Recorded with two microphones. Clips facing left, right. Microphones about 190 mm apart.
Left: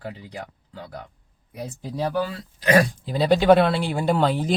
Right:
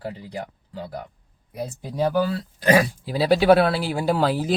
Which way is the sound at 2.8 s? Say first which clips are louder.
Left 1 dB; 5° right (ahead or behind).